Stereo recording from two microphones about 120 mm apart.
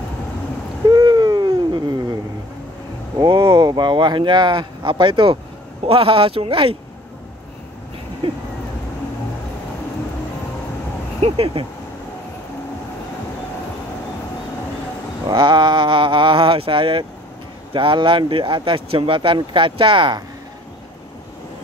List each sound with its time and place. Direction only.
0.8 s a sound: 35° right (ahead or behind)
3.2 s speech: 40° right (ahead or behind)
11.1 s speech: 55° right (ahead or behind)
15.2 s speech: 40° right (ahead or behind)